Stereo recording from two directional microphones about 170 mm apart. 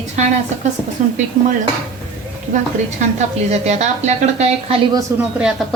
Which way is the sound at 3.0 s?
40° right (ahead or behind).